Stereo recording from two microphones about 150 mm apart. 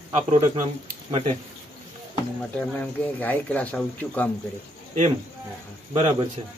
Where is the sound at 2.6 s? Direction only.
10° left (ahead or behind).